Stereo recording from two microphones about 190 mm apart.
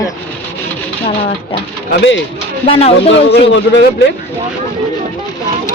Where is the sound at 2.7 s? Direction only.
30° left (ahead or behind).